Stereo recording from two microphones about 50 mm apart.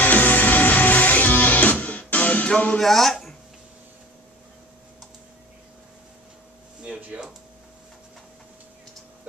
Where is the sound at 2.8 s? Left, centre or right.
Centre.